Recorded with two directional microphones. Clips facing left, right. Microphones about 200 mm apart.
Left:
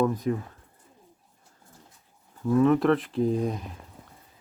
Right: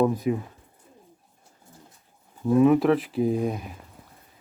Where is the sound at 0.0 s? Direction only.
10° right (ahead or behind).